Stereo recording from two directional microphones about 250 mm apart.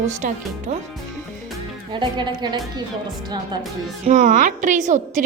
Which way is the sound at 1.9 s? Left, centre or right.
Centre.